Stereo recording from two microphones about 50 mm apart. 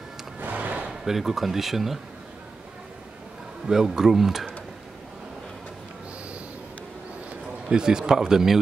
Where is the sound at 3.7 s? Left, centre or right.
Centre.